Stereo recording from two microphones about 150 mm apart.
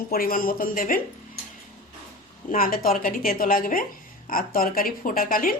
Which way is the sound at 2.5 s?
70° left (ahead or behind).